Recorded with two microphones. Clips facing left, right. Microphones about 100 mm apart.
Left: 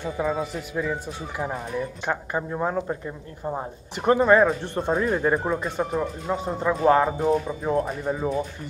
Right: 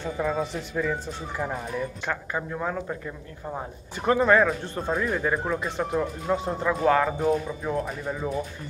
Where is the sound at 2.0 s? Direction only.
15° left (ahead or behind).